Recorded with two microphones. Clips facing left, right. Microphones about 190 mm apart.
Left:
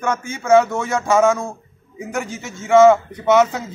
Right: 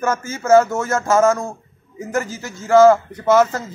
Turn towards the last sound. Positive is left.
turn(degrees=0)  # may be behind; listen again after turning